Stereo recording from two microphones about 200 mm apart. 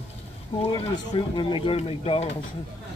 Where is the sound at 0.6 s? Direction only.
25° left (ahead or behind).